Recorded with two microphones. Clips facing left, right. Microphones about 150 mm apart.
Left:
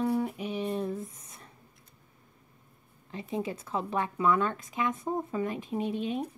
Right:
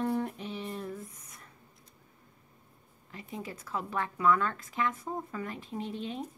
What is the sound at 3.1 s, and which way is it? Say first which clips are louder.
Speech: left 8 dB; 25° left (ahead or behind).